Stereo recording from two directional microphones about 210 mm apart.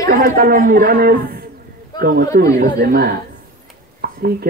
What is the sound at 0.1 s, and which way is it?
Speech, 40° right (ahead or behind).